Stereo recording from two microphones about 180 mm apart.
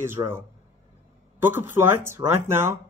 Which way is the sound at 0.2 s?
25° right (ahead or behind).